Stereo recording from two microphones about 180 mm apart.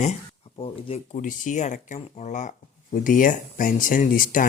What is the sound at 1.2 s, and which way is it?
Speech, 45° left (ahead or behind).